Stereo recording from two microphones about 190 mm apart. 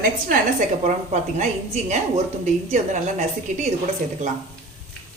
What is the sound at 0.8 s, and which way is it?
Speech, 40° right (ahead or behind).